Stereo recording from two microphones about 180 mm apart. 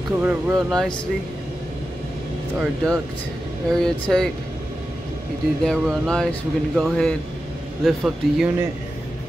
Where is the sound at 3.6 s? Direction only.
5° left (ahead or behind).